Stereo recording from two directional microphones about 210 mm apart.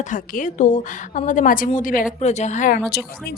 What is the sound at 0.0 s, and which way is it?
Speech, 35° left (ahead or behind).